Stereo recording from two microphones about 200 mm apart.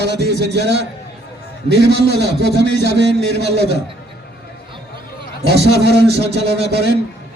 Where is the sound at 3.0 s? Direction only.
60° right (ahead or behind).